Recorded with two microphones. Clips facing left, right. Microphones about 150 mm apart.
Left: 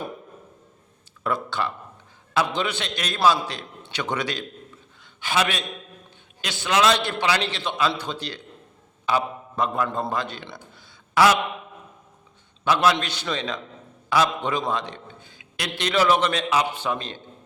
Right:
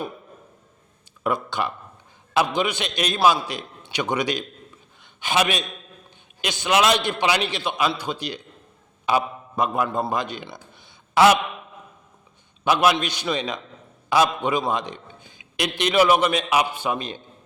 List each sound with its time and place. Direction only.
1.2 s a man's voice: 15° right (ahead or behind)
12.6 s a man's voice: 15° right (ahead or behind)